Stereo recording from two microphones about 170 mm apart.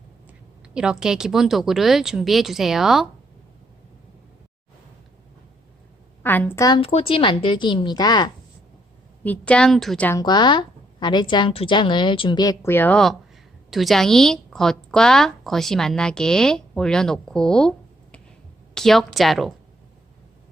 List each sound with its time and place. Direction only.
0.3 s speech: 5° right (ahead or behind)
6.2 s a woman's voice: 10° left (ahead or behind)
6.7 s a woman's voice: 35° left (ahead or behind)
9.2 s speech: 10° left (ahead or behind)
10.1 s a woman's voice: 25° left (ahead or behind); by 19.5 s centre (ahead or behind)